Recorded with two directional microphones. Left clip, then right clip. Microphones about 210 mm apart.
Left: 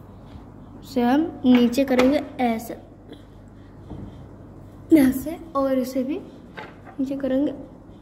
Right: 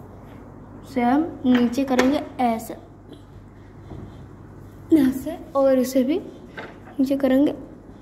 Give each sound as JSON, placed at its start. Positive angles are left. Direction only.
{"t": 0.9, "sound": "speech", "side_deg": 25}
{"t": 2.0, "sound": "a woman's voice", "side_deg": 5}
{"t": 4.8, "sound": "a woman's voice", "side_deg": 30}
{"t": 5.8, "sound": "a woman's voice", "side_deg": -20}